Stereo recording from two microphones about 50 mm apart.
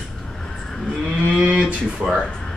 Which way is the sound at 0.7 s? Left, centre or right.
Centre.